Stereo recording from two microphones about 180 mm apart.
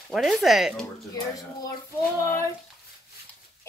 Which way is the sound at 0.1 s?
Centre (ahead or behind).